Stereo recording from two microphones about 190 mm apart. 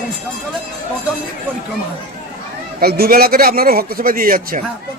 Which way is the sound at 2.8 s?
55° right (ahead or behind).